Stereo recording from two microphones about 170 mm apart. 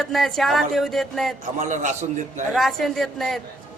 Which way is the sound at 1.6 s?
45° right (ahead or behind).